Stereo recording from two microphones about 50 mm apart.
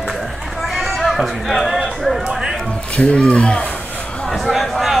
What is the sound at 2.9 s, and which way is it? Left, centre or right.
Speech, left.